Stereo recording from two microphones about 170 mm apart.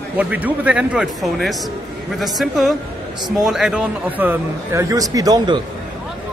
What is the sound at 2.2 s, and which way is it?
A woman's voice, centre (ahead or behind).